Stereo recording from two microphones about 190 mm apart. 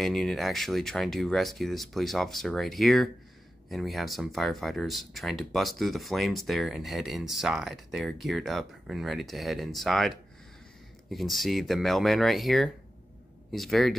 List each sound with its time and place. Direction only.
0.0 s speech: centre (ahead or behind)